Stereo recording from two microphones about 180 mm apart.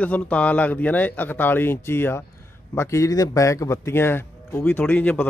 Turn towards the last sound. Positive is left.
turn(degrees=10)  # may be behind; listen again after turning